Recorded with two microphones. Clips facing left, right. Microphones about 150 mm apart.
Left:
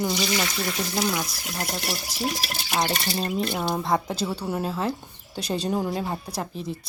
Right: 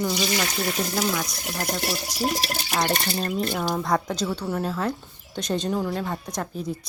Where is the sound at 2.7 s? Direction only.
5° left (ahead or behind).